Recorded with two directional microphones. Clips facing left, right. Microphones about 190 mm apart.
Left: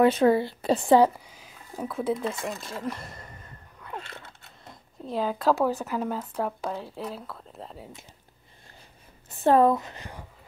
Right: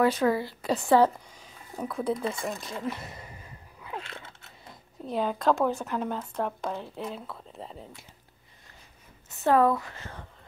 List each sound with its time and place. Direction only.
0.0 s a woman's voice: 25° left (ahead or behind)
0.9 s a sound: 10° left (ahead or behind)
5.0 s speech: centre (ahead or behind)
9.3 s a woman's voice: 30° left (ahead or behind)